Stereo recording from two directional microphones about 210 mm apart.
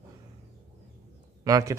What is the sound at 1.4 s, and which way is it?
Speech, 15° right (ahead or behind).